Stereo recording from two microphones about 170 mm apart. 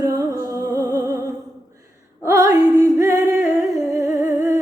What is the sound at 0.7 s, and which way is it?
Music, 20° right (ahead or behind).